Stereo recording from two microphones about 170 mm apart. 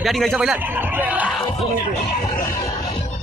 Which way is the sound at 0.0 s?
Centre (ahead or behind).